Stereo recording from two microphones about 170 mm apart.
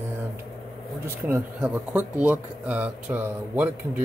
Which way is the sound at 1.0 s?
15° right (ahead or behind).